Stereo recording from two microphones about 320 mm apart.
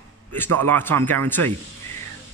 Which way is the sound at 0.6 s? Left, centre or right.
Centre.